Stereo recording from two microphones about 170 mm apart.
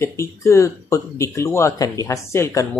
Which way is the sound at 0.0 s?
15° left (ahead or behind).